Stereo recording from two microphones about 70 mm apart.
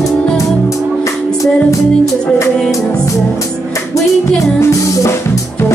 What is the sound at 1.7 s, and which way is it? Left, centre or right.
Music, left.